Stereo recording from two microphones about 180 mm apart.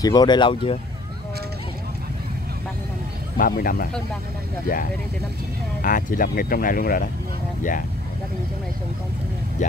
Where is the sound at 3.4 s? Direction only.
55° left (ahead or behind).